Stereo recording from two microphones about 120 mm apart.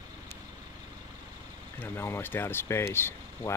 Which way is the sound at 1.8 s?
20° left (ahead or behind).